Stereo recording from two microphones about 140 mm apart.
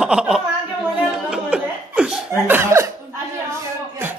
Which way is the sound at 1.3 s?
5° right (ahead or behind).